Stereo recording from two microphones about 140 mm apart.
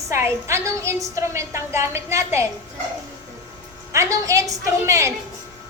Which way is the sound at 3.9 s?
20° right (ahead or behind).